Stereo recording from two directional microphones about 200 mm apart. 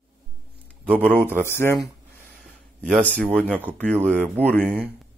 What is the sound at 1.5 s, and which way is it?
Speech, 10° left (ahead or behind).